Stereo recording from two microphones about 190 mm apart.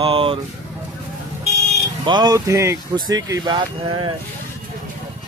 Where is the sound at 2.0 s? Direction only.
20° right (ahead or behind).